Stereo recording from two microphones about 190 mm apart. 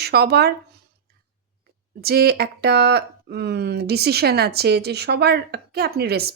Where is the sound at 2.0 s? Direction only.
55° right (ahead or behind).